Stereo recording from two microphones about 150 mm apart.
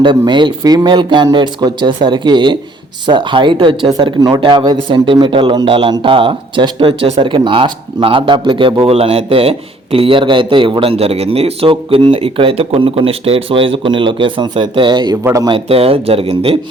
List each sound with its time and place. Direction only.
0.0 s speech: 30° right (ahead or behind)
15.5 s speech: 40° right (ahead or behind)